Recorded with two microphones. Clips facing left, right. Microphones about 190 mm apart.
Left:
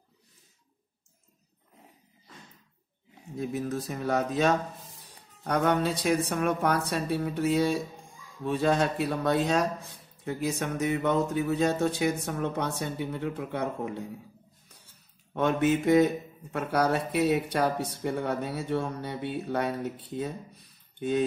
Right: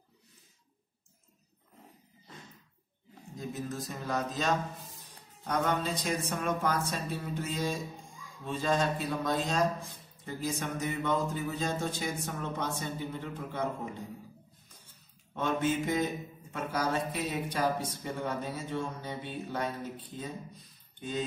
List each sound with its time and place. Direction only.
3.3 s speech: 65° left (ahead or behind)
15.3 s speech: 65° left (ahead or behind)